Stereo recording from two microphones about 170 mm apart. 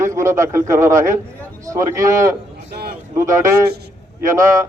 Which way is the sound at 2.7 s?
65° right (ahead or behind).